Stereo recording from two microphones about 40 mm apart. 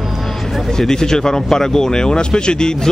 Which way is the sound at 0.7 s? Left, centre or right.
Centre.